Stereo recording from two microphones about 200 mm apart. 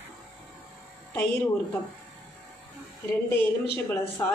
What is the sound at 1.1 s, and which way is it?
Speech, 10° left (ahead or behind).